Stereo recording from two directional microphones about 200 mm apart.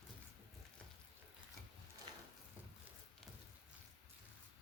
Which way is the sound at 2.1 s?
20° right (ahead or behind).